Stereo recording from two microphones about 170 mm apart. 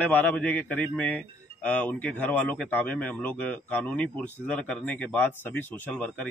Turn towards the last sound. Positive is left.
turn(degrees=10)  # may be behind; listen again after turning